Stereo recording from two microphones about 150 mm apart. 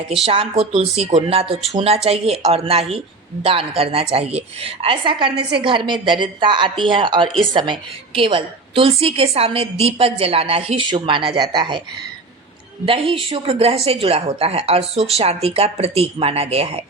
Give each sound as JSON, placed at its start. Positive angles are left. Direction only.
{"t": 0.3, "sound": "a woman's voice", "side_deg": -40}
{"t": 12.8, "sound": "a woman's voice", "side_deg": -35}